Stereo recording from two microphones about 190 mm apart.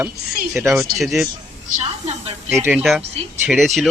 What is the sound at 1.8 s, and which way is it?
Snake, 35° right (ahead or behind).